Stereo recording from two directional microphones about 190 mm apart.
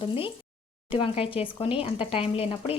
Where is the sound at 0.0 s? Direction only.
30° left (ahead or behind).